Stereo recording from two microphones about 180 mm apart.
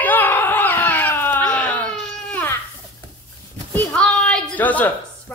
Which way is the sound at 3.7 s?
5° left (ahead or behind).